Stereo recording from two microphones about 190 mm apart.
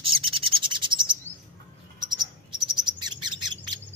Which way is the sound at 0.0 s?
30° right (ahead or behind).